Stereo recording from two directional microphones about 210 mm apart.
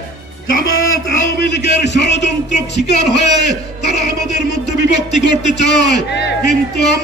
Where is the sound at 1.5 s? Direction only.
55° left (ahead or behind).